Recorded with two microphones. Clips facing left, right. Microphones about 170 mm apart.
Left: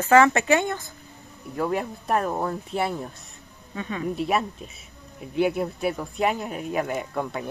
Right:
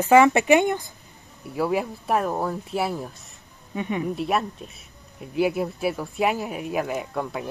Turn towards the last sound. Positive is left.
turn(degrees=0)  # may be behind; listen again after turning